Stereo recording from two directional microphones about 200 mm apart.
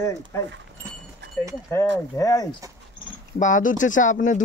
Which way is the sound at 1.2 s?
60° right (ahead or behind).